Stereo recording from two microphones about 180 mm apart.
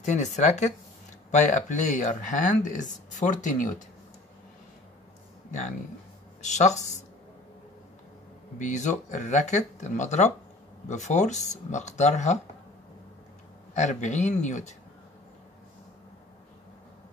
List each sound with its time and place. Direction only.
0.0 s speech: 40° left (ahead or behind)
6.4 s speech: 40° left (ahead or behind)
8.5 s speech: 45° left (ahead or behind)
13.7 s speech: 40° left (ahead or behind)